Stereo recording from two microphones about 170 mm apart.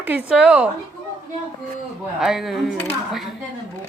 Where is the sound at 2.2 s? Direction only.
Centre (ahead or behind).